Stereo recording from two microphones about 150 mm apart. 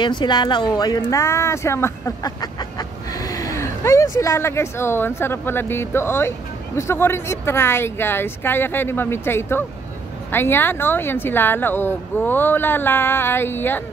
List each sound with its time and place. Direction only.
0.0 s speech: 30° left (ahead or behind); by 13.8 s 15° left (ahead or behind)